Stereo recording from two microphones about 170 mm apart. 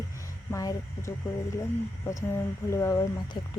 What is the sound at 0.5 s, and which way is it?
Speech, 20° left (ahead or behind).